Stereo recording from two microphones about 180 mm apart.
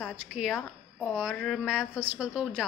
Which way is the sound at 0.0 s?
Centre (ahead or behind).